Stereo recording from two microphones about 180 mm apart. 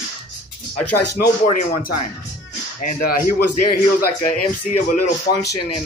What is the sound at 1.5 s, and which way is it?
Speech, 45° left (ahead or behind).